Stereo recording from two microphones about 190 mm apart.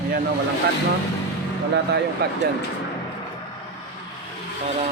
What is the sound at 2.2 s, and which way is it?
Speech, 55° right (ahead or behind).